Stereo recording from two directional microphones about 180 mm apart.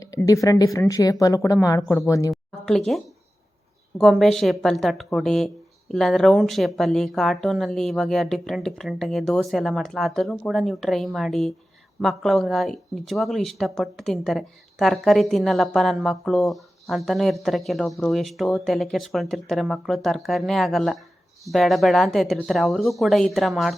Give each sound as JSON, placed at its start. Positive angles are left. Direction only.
{"t": 0.0, "sound": "speech", "side_deg": 20}
{"t": 2.3, "sound": "a sound", "side_deg": 0}
{"t": 3.9, "sound": "speech", "side_deg": 0}